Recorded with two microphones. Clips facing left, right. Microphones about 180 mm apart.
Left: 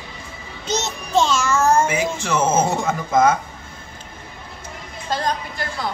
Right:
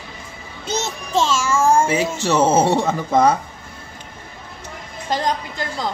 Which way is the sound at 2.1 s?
35° right (ahead or behind).